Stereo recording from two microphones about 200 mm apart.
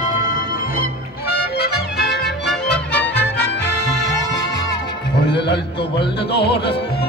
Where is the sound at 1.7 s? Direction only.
55° left (ahead or behind).